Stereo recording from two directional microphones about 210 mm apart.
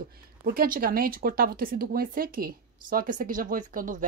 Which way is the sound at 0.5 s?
45° right (ahead or behind).